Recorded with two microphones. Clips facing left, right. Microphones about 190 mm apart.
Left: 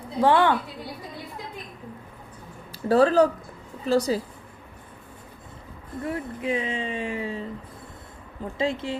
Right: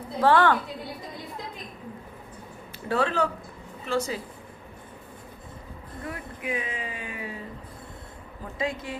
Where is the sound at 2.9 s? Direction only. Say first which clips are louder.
Left 8 dB; 35° left (ahead or behind).